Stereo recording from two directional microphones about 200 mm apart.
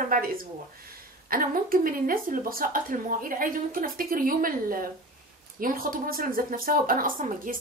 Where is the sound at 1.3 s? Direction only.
45° right (ahead or behind).